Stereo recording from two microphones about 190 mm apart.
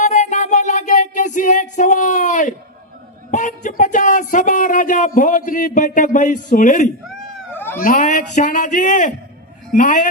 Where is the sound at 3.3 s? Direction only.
40° left (ahead or behind).